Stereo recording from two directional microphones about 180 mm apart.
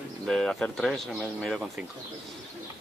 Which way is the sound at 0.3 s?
Centre (ahead or behind).